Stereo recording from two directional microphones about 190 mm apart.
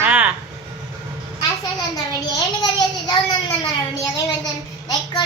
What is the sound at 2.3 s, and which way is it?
A child's voice, 20° left (ahead or behind).